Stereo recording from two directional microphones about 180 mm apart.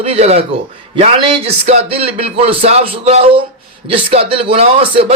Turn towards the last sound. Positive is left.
turn(degrees=-30)  # may be behind; listen again after turning